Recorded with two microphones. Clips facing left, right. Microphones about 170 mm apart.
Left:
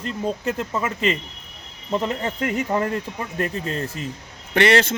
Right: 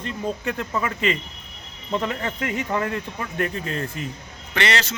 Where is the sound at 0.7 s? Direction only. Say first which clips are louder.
Left 1 dB; 20° left (ahead or behind).